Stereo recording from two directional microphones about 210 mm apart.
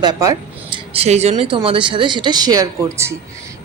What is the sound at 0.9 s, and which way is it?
Speech, 30° right (ahead or behind).